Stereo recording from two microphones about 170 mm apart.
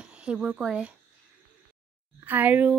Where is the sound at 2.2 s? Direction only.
10° right (ahead or behind).